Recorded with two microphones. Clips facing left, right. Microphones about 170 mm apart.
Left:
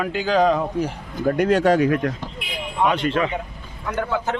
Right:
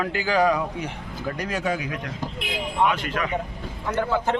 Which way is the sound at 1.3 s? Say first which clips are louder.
Left 10 dB; 60° left (ahead or behind).